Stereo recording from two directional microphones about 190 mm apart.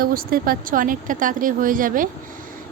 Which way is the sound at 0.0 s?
50° right (ahead or behind).